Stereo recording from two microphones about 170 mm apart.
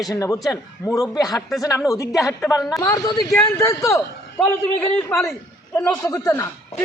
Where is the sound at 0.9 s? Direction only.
20° left (ahead or behind).